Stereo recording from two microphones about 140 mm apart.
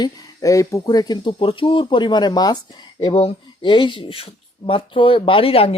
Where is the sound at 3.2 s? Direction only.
45° left (ahead or behind).